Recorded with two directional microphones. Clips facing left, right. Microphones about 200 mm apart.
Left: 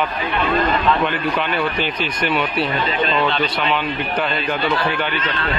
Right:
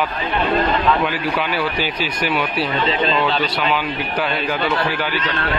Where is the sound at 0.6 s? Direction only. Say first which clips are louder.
Even; 5° right (ahead or behind).